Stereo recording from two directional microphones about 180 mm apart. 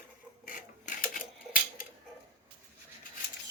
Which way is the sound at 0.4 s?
50° left (ahead or behind).